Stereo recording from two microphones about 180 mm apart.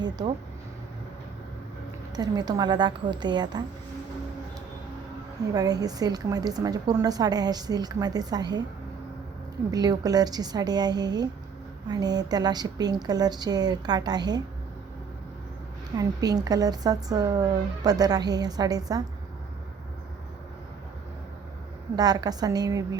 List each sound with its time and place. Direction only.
2.1 s speech: 20° right (ahead or behind)
5.5 s speech: 20° right (ahead or behind)
9.7 s speech: 20° right (ahead or behind)
16.0 s speech: 20° right (ahead or behind)
21.9 s speech: 20° right (ahead or behind)